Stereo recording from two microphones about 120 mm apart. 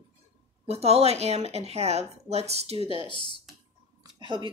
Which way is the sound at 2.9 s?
45° left (ahead or behind).